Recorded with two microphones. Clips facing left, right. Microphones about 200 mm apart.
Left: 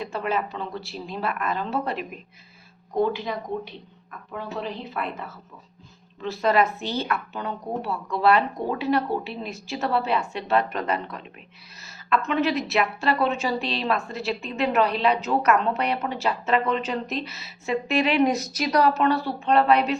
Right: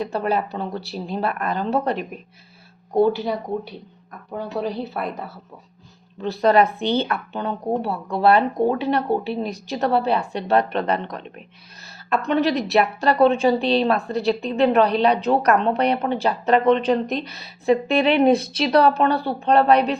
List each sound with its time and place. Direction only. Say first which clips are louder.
0.0 s a woman's voice: right 4 dB; 35° right (ahead or behind)